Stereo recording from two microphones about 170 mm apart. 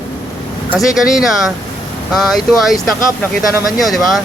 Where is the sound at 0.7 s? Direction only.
Centre (ahead or behind).